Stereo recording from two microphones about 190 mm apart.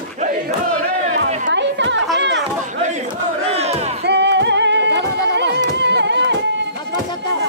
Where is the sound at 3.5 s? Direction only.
35° right (ahead or behind).